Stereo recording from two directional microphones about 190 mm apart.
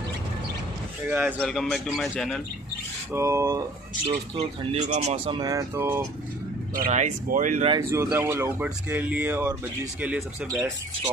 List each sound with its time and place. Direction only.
1.1 s speech: centre (ahead or behind)
3.1 s speech: 15° right (ahead or behind)
4.7 s speech: 35° right (ahead or behind); by 6.0 s 15° right (ahead or behind)
6.7 s speech: 45° right (ahead or behind)
7.9 s speech: 15° right (ahead or behind)